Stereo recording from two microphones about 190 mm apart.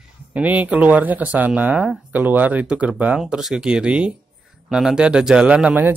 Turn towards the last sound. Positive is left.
turn(degrees=-10)  # may be behind; listen again after turning